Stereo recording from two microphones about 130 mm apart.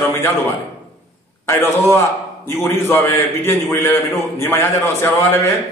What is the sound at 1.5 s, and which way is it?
A man's voice, 20° left (ahead or behind).